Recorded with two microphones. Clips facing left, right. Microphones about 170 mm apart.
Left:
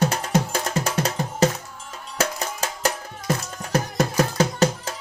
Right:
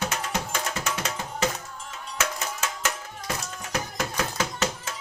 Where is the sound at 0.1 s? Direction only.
35° left (ahead or behind).